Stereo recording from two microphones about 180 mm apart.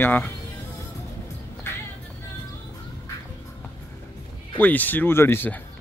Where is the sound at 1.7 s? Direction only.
15° left (ahead or behind).